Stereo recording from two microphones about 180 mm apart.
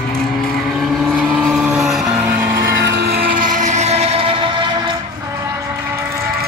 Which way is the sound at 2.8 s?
65° right (ahead or behind).